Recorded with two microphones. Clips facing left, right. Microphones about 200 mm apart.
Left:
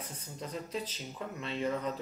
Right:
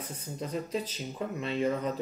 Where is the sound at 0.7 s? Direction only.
15° right (ahead or behind).